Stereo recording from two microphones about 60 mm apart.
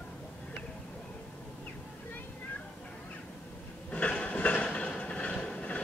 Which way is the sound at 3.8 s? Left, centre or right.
Left.